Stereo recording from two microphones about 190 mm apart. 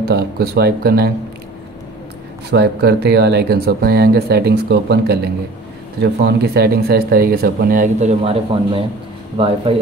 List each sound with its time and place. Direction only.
0.0 s speech: 55° right (ahead or behind)
2.5 s speech: 60° right (ahead or behind); by 8.8 s 30° right (ahead or behind)